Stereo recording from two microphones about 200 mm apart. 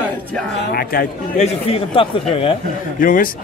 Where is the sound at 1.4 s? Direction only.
30° left (ahead or behind).